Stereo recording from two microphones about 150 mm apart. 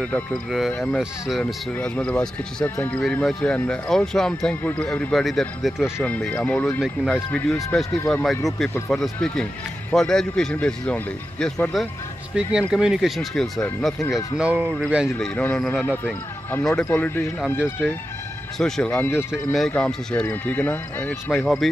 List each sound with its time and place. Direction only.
0.5 s speech: centre (ahead or behind)
5.9 s speech: 10° left (ahead or behind)
6.8 s speech: 5° right (ahead or behind)
7.7 s speech: 10° left (ahead or behind); by 15.0 s 5° right (ahead or behind)
15.1 s speech: 5° left (ahead or behind)